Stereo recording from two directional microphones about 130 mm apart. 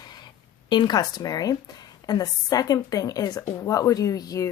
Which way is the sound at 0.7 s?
35° left (ahead or behind).